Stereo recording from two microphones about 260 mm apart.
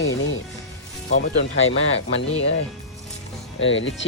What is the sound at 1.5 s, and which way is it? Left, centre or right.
Speech, left.